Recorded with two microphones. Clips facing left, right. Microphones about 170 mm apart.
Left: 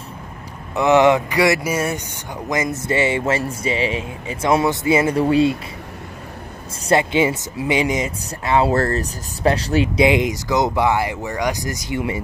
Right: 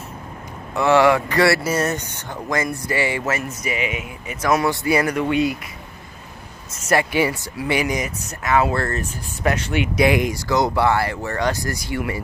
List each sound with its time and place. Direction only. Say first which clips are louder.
0.7 s speech: left 2 dB; 20° left (ahead or behind)
6.8 s speech: left 2 dB; 25° left (ahead or behind)
9.9 s speech: right 1 dB; 20° left (ahead or behind)